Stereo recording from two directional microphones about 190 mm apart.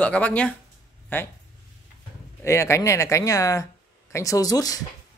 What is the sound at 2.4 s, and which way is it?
Speech, 15° left (ahead or behind).